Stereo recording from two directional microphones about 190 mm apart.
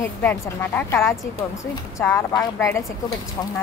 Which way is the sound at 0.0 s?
10° left (ahead or behind).